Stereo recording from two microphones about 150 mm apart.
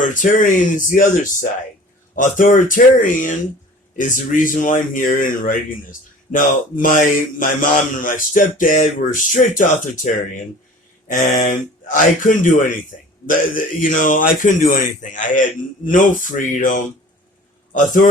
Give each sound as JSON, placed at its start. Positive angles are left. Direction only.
{"t": 0.0, "sound": "a man's voice", "side_deg": 60}